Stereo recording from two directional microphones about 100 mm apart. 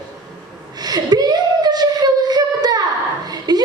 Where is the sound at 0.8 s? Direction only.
40° right (ahead or behind).